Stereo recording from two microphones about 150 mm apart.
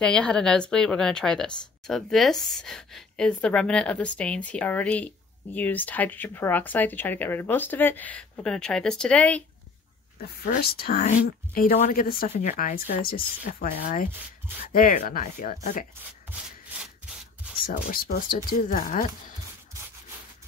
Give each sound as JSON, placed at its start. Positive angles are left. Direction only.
{"t": 0.0, "sound": "speech", "side_deg": 5}
{"t": 10.2, "sound": "speech", "side_deg": 80}
{"t": 11.1, "sound": "speech", "side_deg": 65}
{"t": 13.6, "sound": "speech", "side_deg": 65}
{"t": 16.0, "sound": "rub", "side_deg": -10}
{"t": 17.6, "sound": "speech", "side_deg": 75}